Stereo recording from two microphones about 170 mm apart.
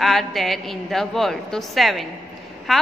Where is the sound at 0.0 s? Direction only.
Centre (ahead or behind).